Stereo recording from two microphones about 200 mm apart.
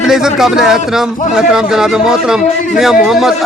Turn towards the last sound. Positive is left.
turn(degrees=0)  # may be behind; listen again after turning